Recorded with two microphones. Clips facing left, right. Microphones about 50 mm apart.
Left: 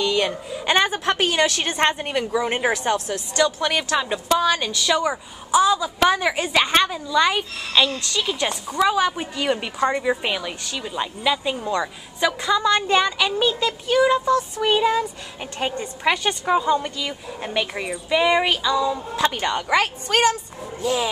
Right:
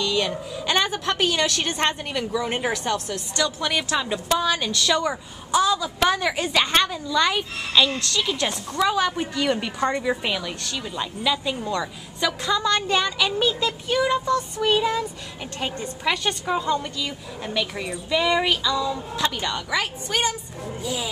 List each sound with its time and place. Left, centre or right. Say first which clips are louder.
0.0 s a woman's voice: left 2 dB; left
3.6 s a woman's voice: left 2 dB; centre
19.3 s a woman's voice: left 5 dB; left
19.8 s a woman's voice: left 6 dB; left